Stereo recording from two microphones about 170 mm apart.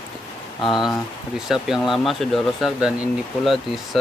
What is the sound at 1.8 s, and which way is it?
Speech, centre (ahead or behind).